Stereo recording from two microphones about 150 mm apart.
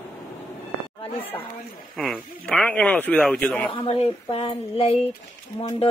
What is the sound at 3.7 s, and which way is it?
Speech, 40° left (ahead or behind).